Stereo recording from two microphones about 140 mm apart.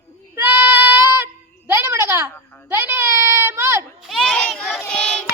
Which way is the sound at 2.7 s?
15° right (ahead or behind).